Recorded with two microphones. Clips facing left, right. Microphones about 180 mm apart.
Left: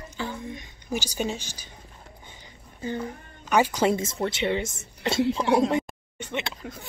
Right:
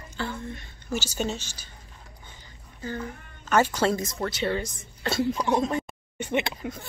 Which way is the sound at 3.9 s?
25° left (ahead or behind).